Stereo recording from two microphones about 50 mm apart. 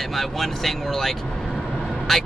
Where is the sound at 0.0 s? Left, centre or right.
Centre.